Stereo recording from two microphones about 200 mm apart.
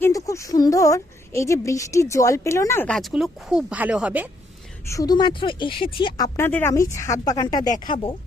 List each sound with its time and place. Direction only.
0.0 s a woman's voice: 15° left (ahead or behind); by 4.3 s 5° right (ahead or behind)
4.9 s speech: 20° left (ahead or behind)